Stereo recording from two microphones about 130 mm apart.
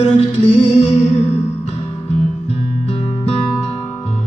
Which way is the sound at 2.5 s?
55° left (ahead or behind).